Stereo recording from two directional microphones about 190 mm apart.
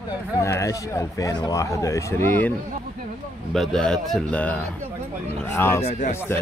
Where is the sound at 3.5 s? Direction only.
Centre (ahead or behind).